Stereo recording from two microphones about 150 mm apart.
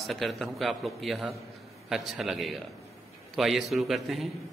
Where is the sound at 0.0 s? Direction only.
Centre (ahead or behind).